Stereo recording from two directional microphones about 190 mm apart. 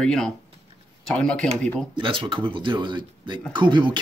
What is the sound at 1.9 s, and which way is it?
Speech, 25° right (ahead or behind).